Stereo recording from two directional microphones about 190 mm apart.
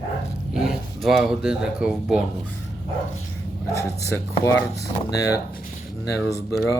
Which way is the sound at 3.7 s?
15° left (ahead or behind).